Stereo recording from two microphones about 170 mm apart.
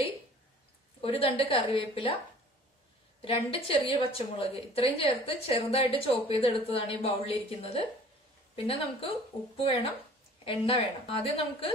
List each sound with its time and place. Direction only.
1.0 s a woman's voice: 35° left (ahead or behind)
3.3 s a woman's voice: 35° left (ahead or behind)
10.4 s a woman's voice: 35° left (ahead or behind)